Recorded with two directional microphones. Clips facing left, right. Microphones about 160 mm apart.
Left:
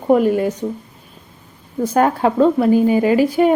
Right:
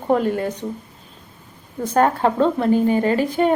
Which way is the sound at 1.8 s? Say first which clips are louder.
Left 2 dB; 10° left (ahead or behind).